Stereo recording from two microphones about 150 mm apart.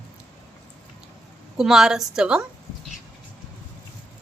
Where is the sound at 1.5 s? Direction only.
5° right (ahead or behind).